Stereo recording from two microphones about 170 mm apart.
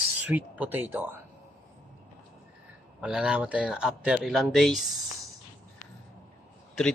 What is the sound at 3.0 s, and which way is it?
Speech, 5° right (ahead or behind).